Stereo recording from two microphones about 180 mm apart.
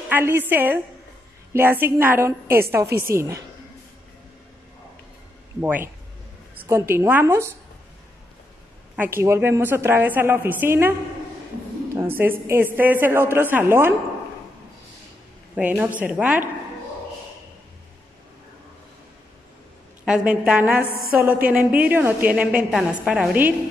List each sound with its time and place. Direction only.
0.1 s a woman's voice: 10° right (ahead or behind)
5.6 s a woman's voice: 10° right (ahead or behind)
8.9 s a woman's voice: 10° right (ahead or behind)
15.5 s a woman's voice: 10° right (ahead or behind)
20.1 s a woman's voice: 5° right (ahead or behind)